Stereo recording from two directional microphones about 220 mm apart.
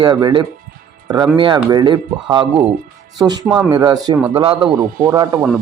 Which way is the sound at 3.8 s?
20° right (ahead or behind).